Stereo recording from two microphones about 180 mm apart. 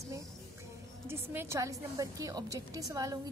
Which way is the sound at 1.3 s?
15° right (ahead or behind).